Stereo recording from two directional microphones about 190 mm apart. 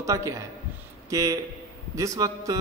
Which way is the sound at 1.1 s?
15° right (ahead or behind).